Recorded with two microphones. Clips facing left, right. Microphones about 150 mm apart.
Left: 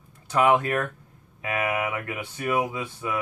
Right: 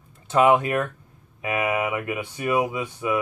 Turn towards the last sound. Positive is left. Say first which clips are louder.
# right 5 dB
turn(degrees=-15)  # may be behind; listen again after turning